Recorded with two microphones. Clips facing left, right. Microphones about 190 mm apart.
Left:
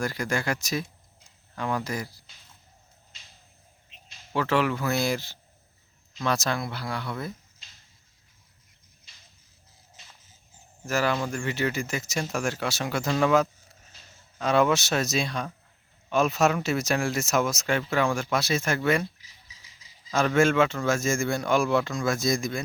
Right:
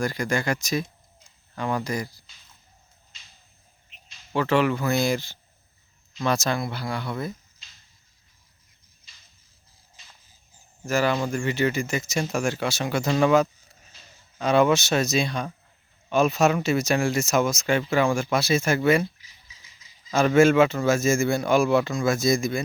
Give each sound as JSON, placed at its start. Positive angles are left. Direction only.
{"t": 0.0, "sound": "speech", "side_deg": 5}
{"t": 4.4, "sound": "speech", "side_deg": 5}
{"t": 10.8, "sound": "speech", "side_deg": 0}
{"t": 19.8, "sound": "a sound", "side_deg": 35}
{"t": 20.1, "sound": "speech", "side_deg": -5}